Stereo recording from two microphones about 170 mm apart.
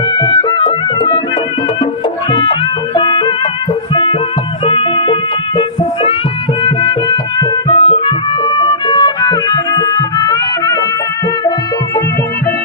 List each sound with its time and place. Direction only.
0.1 s music: 25° left (ahead or behind)
2.3 s music: 30° left (ahead or behind)